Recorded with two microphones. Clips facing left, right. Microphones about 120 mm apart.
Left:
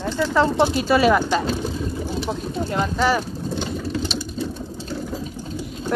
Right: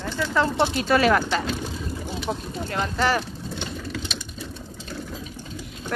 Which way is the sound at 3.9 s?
30° left (ahead or behind).